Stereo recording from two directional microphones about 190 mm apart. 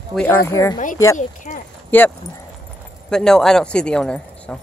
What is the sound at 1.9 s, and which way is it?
Speech, 10° left (ahead or behind).